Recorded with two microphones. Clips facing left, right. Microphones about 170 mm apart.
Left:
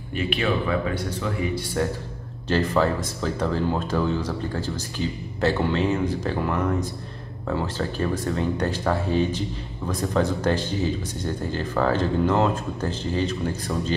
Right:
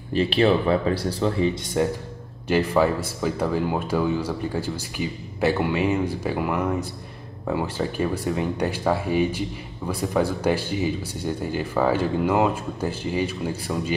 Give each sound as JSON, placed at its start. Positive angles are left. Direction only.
{"t": 0.1, "sound": "speech", "side_deg": -30}